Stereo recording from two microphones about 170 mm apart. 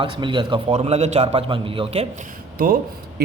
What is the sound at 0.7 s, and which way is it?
Speech, 40° right (ahead or behind).